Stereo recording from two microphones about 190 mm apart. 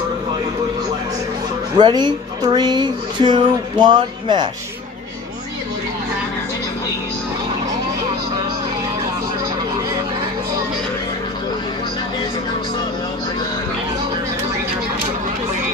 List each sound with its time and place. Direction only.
1.8 s speech: 20° right (ahead or behind)